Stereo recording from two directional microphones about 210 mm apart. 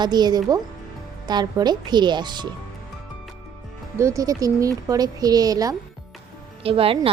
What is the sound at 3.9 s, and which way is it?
A woman's voice, 15° right (ahead or behind).